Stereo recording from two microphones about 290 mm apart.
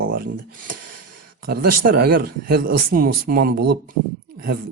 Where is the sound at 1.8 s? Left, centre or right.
Right.